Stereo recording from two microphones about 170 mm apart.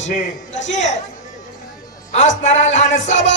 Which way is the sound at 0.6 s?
90° left.